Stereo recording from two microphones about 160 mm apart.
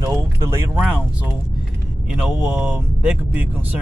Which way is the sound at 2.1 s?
5° right (ahead or behind).